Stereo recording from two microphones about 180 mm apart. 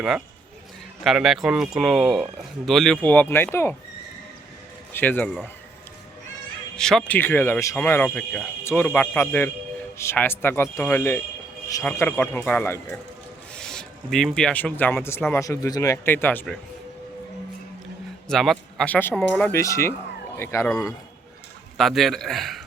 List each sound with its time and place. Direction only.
1.0 s speech: centre (ahead or behind)
4.9 s speech: 10° left (ahead or behind)
6.7 s speech: 5° left (ahead or behind)
18.3 s speech: centre (ahead or behind); by 20.9 s 20° left (ahead or behind)
21.8 s speech: centre (ahead or behind)